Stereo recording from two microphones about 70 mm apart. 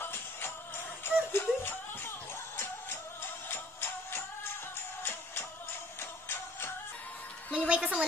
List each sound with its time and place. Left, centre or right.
0.0 s music: left
7.5 s music: centre